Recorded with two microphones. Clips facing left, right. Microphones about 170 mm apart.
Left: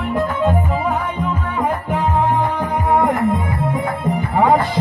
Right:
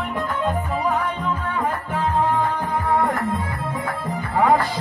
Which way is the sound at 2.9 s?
20° left (ahead or behind).